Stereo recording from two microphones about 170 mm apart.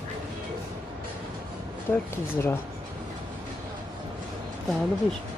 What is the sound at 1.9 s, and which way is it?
Speech, 15° left (ahead or behind).